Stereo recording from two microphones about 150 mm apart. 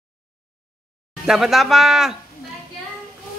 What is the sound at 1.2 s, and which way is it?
Speech, centre (ahead or behind).